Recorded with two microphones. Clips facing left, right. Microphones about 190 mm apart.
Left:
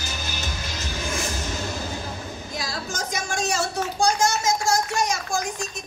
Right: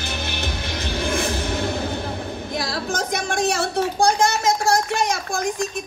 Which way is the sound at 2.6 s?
60° right (ahead or behind).